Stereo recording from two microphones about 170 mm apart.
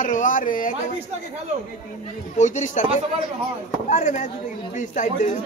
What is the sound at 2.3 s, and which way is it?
Speech, 45° left (ahead or behind).